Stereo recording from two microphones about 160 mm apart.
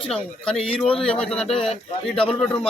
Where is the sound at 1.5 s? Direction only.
40° left (ahead or behind).